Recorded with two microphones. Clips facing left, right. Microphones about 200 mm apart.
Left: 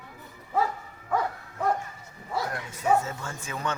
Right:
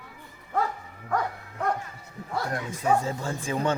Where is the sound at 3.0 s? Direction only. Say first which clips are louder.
Right 6 dB; 30° right (ahead or behind).